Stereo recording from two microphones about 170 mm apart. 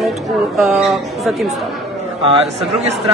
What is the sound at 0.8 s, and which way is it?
Speech, centre (ahead or behind).